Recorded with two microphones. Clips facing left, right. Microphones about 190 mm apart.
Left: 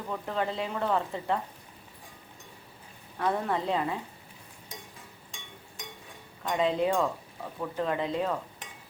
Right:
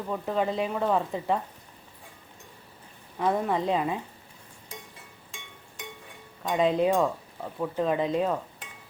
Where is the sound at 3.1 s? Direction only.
15° right (ahead or behind).